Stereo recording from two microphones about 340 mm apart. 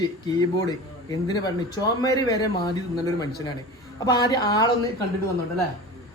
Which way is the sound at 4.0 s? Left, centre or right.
Centre.